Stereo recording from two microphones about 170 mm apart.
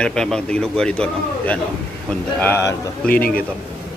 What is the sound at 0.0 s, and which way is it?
A man's voice, 5° left (ahead or behind).